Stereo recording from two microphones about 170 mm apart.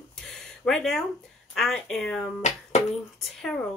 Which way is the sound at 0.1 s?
5° left (ahead or behind).